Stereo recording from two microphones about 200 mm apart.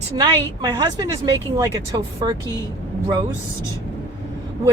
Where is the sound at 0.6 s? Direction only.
20° right (ahead or behind).